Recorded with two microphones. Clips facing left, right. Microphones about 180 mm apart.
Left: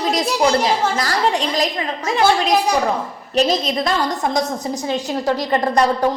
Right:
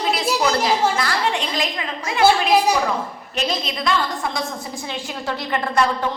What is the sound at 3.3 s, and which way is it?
A woman's voice, 40° left (ahead or behind).